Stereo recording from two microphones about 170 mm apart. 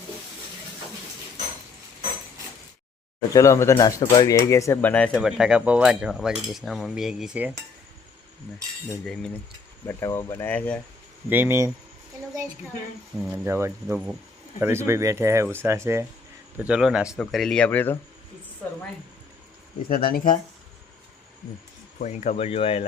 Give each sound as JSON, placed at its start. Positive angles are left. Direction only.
{"t": 3.3, "sound": "speech", "side_deg": 15}
{"t": 9.8, "sound": "speech", "side_deg": 15}
{"t": 11.3, "sound": "speech", "side_deg": -10}
{"t": 13.3, "sound": "speech", "side_deg": -15}
{"t": 16.6, "sound": "speech", "side_deg": -5}
{"t": 19.9, "sound": "speech", "side_deg": 60}
{"t": 22.0, "sound": "speech", "side_deg": 45}